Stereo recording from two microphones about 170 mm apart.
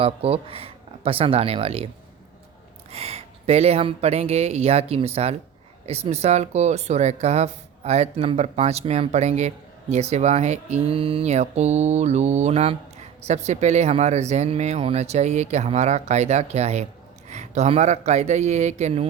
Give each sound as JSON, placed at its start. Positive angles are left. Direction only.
{"t": 0.0, "sound": "speech", "side_deg": -35}
{"t": 2.9, "sound": "speech", "side_deg": -35}